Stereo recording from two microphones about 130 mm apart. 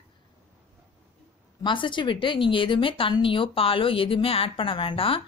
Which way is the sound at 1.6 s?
40° left (ahead or behind).